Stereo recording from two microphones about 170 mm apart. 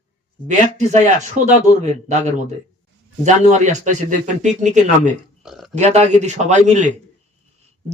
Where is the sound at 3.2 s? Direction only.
45° right (ahead or behind).